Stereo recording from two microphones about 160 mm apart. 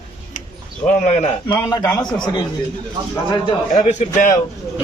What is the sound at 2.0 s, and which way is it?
Speech, 5° left (ahead or behind).